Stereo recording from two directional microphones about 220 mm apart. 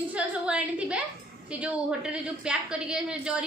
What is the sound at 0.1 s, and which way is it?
A woman's voice, 5° right (ahead or behind).